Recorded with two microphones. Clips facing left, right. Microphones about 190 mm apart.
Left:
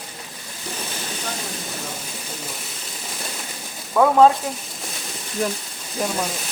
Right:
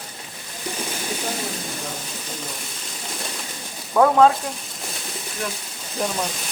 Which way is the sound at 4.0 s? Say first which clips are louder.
Even; centre (ahead or behind).